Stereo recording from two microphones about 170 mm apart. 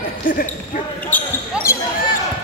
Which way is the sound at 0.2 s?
50° left (ahead or behind).